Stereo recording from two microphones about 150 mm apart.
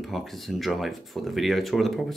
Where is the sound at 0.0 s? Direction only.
Centre (ahead or behind).